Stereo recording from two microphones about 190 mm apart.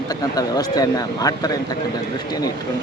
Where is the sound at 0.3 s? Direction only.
20° left (ahead or behind).